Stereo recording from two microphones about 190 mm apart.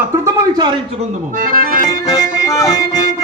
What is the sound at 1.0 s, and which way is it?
Speech, 45° right (ahead or behind).